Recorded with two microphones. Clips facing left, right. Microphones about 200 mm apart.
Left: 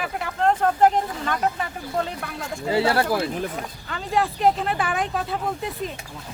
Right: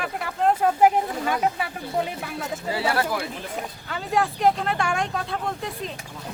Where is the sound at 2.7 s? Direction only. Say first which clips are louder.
Left 5 dB; 25° left (ahead or behind).